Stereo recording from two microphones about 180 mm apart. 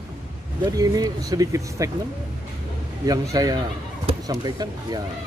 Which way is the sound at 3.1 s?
20° right (ahead or behind).